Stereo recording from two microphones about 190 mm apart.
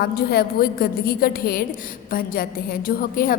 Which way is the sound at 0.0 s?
55° left (ahead or behind).